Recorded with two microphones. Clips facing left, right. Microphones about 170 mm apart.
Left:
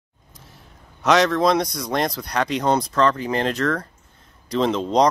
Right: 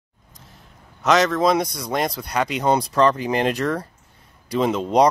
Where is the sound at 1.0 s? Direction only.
Centre (ahead or behind).